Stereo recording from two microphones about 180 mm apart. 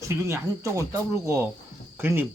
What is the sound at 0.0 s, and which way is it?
Speech, 15° right (ahead or behind).